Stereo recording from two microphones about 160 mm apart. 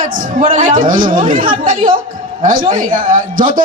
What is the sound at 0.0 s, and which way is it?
A man's voice, 60° right (ahead or behind).